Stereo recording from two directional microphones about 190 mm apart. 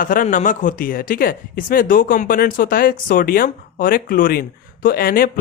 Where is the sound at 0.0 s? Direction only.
45° left (ahead or behind).